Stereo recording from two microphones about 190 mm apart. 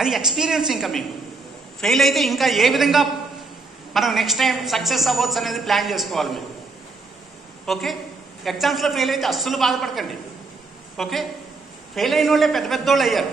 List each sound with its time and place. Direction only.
0.0 s a woman's voice: centre (ahead or behind)
7.6 s a woman's voice: centre (ahead or behind)